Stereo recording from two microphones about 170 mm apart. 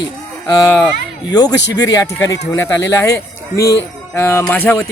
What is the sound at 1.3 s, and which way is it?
Speech, 25° left (ahead or behind).